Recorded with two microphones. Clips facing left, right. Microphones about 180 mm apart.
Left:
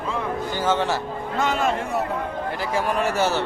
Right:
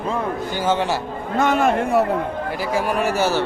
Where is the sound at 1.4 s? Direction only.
55° right (ahead or behind).